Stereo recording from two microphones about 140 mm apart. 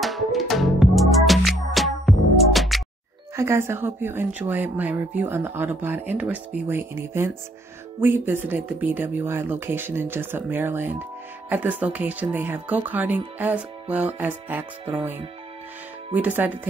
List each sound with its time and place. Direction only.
0.0 s music: centre (ahead or behind)
3.3 s speech: 20° right (ahead or behind)
16.2 s speech: 10° right (ahead or behind)